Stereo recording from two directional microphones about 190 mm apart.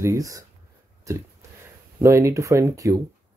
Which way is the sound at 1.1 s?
15° right (ahead or behind).